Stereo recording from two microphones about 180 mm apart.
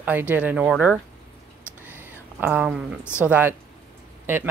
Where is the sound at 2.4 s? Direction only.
5° right (ahead or behind).